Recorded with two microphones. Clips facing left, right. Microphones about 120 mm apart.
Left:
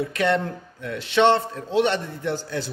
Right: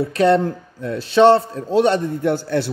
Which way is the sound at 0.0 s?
35° right (ahead or behind).